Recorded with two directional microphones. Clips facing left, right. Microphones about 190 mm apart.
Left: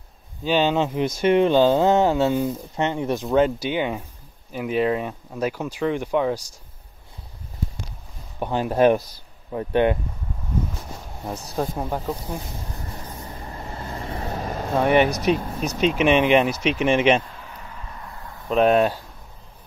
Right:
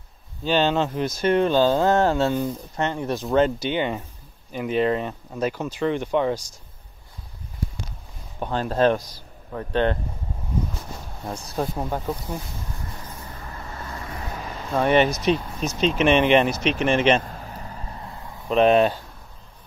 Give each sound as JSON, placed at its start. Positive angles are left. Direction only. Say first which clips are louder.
{"t": 0.5, "sound": "speech", "louder": "left 1 dB", "side_deg": 10}
{"t": 8.4, "sound": "speech", "louder": "left 2 dB", "side_deg": 15}
{"t": 11.2, "sound": "speech", "louder": "left 1 dB", "side_deg": 5}
{"t": 13.3, "sound": "vehicle", "louder": "left 3 dB", "side_deg": 25}
{"t": 14.3, "sound": "vehicle", "louder": "left 6 dB", "side_deg": 45}
{"t": 14.8, "sound": "speech", "louder": "even", "side_deg": 15}
{"t": 17.2, "sound": "vehicle", "louder": "right 4 dB", "side_deg": -40}
{"t": 18.5, "sound": "speech", "louder": "right 1 dB", "side_deg": 0}